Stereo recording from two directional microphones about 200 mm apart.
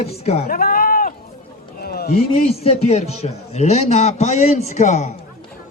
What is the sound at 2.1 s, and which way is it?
A man's voice, 30° left (ahead or behind).